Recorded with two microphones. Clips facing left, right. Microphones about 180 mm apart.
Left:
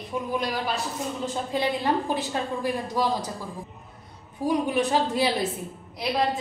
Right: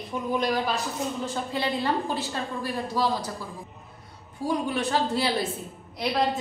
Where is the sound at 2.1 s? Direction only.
15° left (ahead or behind).